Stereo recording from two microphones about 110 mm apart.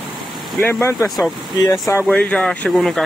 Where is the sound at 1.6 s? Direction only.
30° left (ahead or behind).